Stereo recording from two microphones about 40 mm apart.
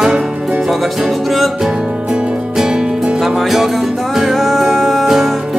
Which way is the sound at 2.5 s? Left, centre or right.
Centre.